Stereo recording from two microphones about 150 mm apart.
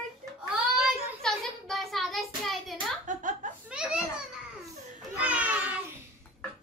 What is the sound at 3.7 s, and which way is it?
Children playing, 5° right (ahead or behind).